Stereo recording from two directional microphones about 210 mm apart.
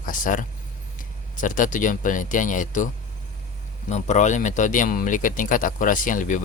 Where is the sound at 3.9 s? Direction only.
35° left (ahead or behind).